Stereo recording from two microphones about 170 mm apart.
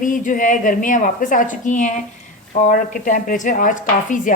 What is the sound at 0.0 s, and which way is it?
A woman's voice, 50° left (ahead or behind).